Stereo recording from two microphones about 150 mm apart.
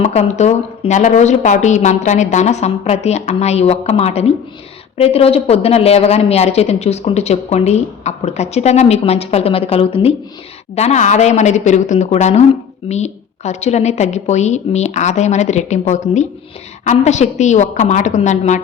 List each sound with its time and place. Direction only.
0.0 s speech: 45° left (ahead or behind)